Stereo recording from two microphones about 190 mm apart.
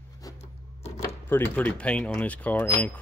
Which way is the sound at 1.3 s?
10° left (ahead or behind).